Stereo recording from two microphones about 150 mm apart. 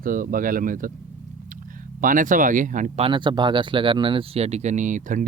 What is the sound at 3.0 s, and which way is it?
Speech, 30° right (ahead or behind).